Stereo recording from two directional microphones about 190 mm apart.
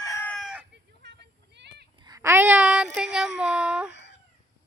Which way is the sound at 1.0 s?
65° right (ahead or behind).